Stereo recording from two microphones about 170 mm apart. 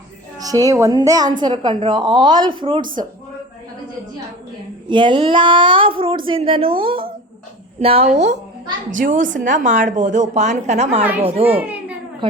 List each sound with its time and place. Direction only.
0.3 s a woman's voice: 20° right (ahead or behind)
4.9 s a woman's voice: 30° right (ahead or behind)
9.0 s a woman's voice: 50° right (ahead or behind); by 12.4 s 30° right (ahead or behind)